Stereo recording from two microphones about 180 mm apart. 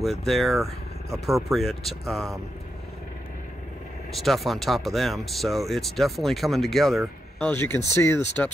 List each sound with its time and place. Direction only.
0.0 s speech: centre (ahead or behind)
4.1 s speech: centre (ahead or behind)